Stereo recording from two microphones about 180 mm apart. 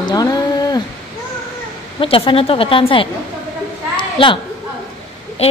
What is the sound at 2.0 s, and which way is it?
A woman's voice, 30° left (ahead or behind).